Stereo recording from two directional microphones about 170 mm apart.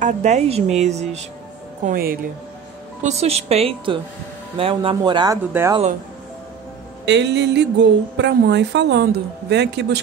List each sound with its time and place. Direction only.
0.0 s a woman's voice: 40° right (ahead or behind)
1.9 s speech: 60° right (ahead or behind)
3.0 s speech: 40° right (ahead or behind); by 5.8 s 15° right (ahead or behind)
7.1 s speech: 90° right